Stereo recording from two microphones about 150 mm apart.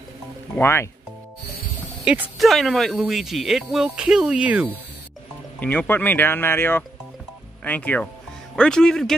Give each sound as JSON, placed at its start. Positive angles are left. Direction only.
{"t": 0.6, "sound": "speech", "side_deg": 15}
{"t": 2.3, "sound": "speech", "side_deg": 0}
{"t": 5.6, "sound": "speech", "side_deg": 10}